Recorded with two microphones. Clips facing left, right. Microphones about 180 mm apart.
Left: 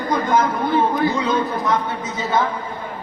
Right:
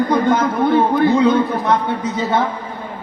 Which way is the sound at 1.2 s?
60° right (ahead or behind).